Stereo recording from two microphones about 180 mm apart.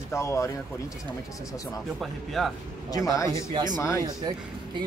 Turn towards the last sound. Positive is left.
turn(degrees=-20)  # may be behind; listen again after turning